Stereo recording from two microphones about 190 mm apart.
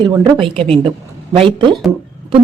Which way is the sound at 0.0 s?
20° right (ahead or behind).